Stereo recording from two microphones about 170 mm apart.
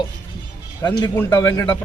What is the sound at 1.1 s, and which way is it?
Speech, 15° left (ahead or behind).